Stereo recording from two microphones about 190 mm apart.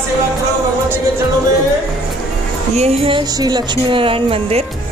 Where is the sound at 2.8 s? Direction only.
30° right (ahead or behind).